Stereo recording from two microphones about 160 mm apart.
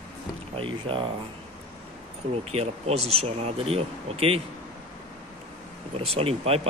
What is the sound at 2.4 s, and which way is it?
Speech, 40° right (ahead or behind).